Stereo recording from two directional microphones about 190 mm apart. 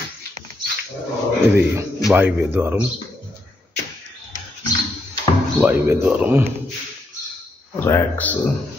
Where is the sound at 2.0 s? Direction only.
10° right (ahead or behind).